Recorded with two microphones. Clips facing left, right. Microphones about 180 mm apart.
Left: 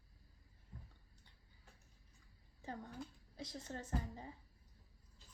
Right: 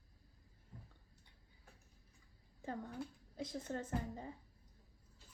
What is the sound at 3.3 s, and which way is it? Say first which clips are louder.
Speech: right 5 dB; 50° right (ahead or behind).